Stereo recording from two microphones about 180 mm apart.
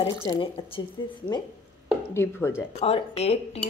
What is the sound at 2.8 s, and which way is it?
Speech, 35° left (ahead or behind).